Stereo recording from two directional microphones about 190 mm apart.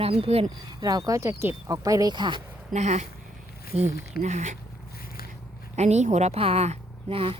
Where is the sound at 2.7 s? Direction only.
35° right (ahead or behind).